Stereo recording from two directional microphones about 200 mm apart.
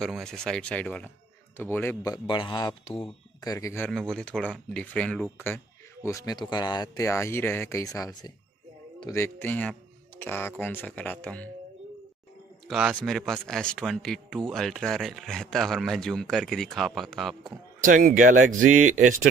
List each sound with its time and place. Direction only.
0.0 s speech: centre (ahead or behind)
2.1 s a man's voice: 25° left (ahead or behind); by 5.6 s 5° left (ahead or behind)
6.0 s speech: 15° left (ahead or behind)
12.6 s speech: centre (ahead or behind)
17.8 s speech: 40° right (ahead or behind)